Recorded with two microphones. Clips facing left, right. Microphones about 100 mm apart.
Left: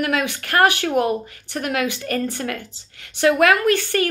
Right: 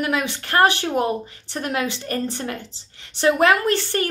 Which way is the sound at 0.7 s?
20° right (ahead or behind).